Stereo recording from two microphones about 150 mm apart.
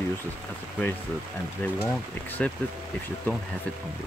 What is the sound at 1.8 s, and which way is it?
Speech, 15° left (ahead or behind).